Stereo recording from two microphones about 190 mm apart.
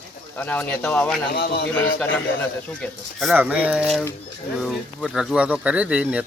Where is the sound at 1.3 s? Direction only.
50° left (ahead or behind).